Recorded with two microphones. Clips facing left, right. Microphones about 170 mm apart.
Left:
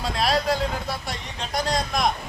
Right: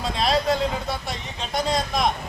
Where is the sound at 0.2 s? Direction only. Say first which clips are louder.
Right 1 dB; centre (ahead or behind).